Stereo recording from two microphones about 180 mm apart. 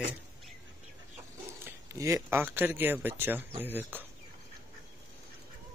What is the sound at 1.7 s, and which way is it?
Speech, 15° right (ahead or behind).